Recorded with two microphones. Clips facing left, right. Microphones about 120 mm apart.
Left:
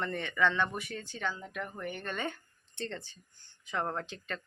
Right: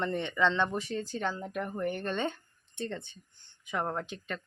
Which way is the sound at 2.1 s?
25° right (ahead or behind).